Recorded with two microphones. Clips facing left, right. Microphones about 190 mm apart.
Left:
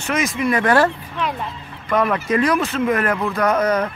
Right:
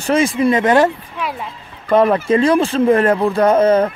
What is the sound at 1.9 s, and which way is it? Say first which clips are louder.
Speech: right 6 dB; 30° right (ahead or behind).